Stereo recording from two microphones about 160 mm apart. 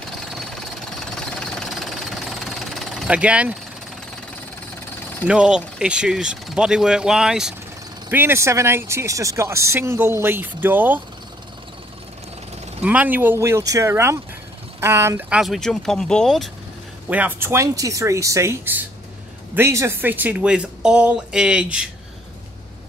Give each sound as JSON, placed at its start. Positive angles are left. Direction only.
{"t": 0.2, "sound": "jackhammer", "side_deg": 0}
{"t": 5.3, "sound": "speech", "side_deg": -5}
{"t": 12.8, "sound": "speech", "side_deg": -10}
{"t": 17.1, "sound": "speech", "side_deg": -10}